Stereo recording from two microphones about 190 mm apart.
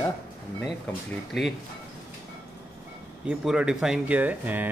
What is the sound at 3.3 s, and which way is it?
Speech, 5° right (ahead or behind).